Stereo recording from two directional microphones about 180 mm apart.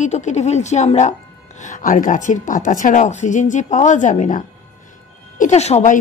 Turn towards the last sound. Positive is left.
turn(degrees=40)  # may be behind; listen again after turning